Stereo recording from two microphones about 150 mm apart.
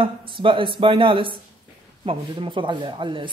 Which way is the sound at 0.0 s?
35° right (ahead or behind).